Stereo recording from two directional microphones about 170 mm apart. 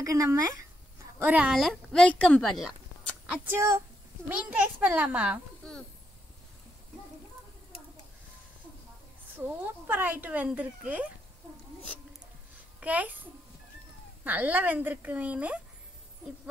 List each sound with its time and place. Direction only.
0.0 s a sound: 20° right (ahead or behind)
1.3 s a woman's voice: 5° right (ahead or behind)
2.6 s a sound: centre (ahead or behind)
3.4 s speech: 15° right (ahead or behind)
9.4 s speech: 10° right (ahead or behind)
12.8 s speech: 10° right (ahead or behind)
14.2 s speech: 10° right (ahead or behind)